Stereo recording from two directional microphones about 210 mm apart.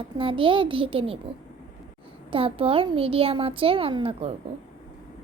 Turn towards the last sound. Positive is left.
turn(degrees=-25)  # may be behind; listen again after turning